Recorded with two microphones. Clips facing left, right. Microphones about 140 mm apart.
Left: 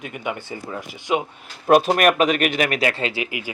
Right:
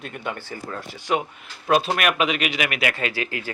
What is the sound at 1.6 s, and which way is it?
Speech, 45° left (ahead or behind).